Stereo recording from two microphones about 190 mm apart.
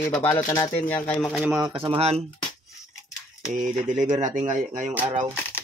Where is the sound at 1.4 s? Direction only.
5° right (ahead or behind).